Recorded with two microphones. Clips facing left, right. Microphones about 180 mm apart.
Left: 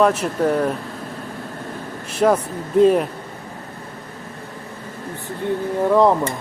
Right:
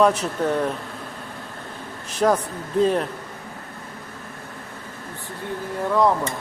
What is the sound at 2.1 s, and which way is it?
Speech, 5° left (ahead or behind).